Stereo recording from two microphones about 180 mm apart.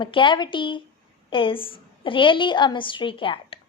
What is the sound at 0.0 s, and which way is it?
A woman's voice, 25° left (ahead or behind).